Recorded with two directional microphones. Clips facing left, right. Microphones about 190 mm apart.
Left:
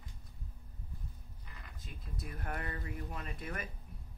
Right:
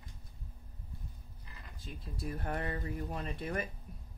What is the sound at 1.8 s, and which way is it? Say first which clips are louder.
Speech: right 5 dB; 30° right (ahead or behind).